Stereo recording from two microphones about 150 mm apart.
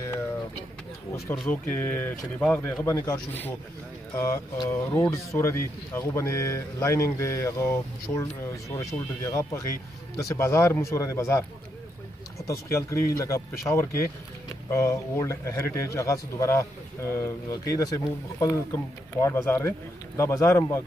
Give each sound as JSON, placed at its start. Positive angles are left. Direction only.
{"t": 1.3, "sound": "speech", "side_deg": 10}
{"t": 2.9, "sound": "speech", "side_deg": 25}